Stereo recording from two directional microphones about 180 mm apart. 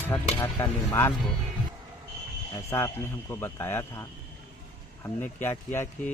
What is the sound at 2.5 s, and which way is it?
Speech, 15° left (ahead or behind).